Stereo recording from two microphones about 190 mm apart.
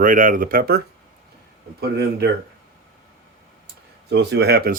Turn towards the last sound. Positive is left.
turn(degrees=-55)  # may be behind; listen again after turning